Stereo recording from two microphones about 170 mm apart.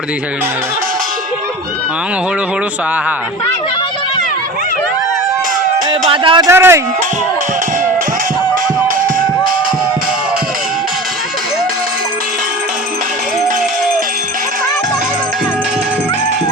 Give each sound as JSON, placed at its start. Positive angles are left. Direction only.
{"t": 6.1, "sound": "speech", "side_deg": -30}
{"t": 6.5, "sound": "a man's voice", "side_deg": -15}